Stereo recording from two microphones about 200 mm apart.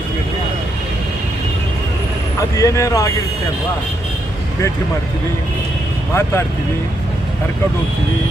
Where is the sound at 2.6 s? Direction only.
15° left (ahead or behind).